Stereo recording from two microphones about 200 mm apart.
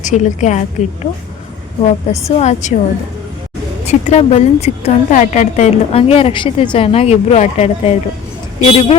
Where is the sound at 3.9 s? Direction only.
35° left (ahead or behind).